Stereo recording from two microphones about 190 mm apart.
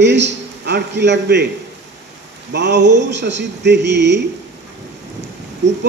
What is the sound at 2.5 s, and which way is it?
A man's voice, 65° right (ahead or behind).